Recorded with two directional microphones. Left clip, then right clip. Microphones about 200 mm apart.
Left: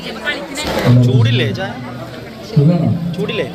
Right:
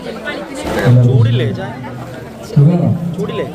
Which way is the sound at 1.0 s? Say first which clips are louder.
Even; 15° left (ahead or behind).